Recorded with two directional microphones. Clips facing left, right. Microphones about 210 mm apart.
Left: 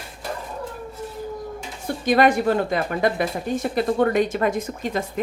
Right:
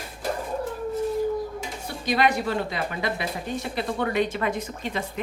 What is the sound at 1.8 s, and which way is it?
A woman's voice, 50° left (ahead or behind).